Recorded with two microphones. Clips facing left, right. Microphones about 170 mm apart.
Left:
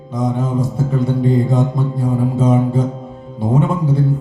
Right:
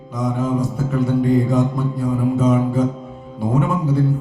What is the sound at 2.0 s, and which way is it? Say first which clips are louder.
Music: even; 25° left (ahead or behind).